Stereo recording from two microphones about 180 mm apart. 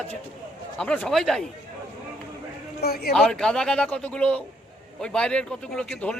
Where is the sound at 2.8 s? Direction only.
60° left (ahead or behind).